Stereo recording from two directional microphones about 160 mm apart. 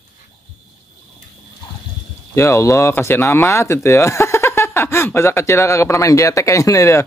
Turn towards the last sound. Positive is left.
turn(degrees=20)  # may be behind; listen again after turning